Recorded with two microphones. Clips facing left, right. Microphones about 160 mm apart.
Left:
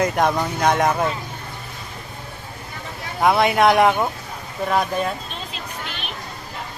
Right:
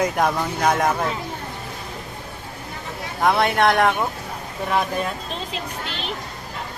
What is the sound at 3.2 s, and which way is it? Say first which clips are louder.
Speech: left 2 dB; 5° left (ahead or behind).